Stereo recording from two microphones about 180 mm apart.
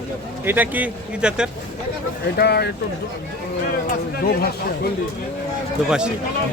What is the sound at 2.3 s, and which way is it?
Speech, 65° left (ahead or behind).